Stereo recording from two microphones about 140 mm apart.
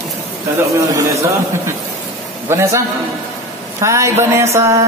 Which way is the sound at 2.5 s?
20° right (ahead or behind).